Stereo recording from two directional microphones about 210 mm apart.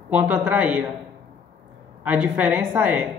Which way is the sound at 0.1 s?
5° right (ahead or behind).